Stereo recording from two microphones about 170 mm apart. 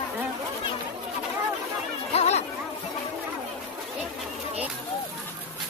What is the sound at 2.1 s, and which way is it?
Chatter, 40° left (ahead or behind).